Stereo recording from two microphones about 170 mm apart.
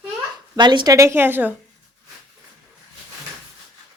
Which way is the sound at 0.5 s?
25° right (ahead or behind).